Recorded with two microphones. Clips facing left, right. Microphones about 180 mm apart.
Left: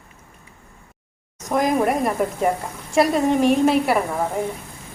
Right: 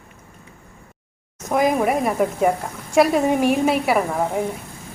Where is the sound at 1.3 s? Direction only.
5° right (ahead or behind).